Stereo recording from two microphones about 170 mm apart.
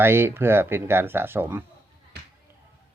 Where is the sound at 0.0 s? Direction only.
15° right (ahead or behind).